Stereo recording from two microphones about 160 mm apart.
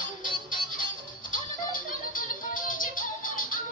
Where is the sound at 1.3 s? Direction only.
55° left (ahead or behind).